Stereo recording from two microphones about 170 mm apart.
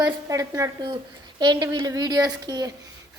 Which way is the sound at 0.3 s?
20° right (ahead or behind).